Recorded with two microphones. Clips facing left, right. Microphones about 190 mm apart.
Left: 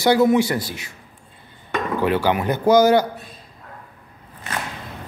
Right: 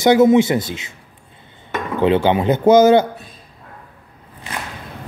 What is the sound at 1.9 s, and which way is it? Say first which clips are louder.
Speech: right 5 dB; 20° right (ahead or behind).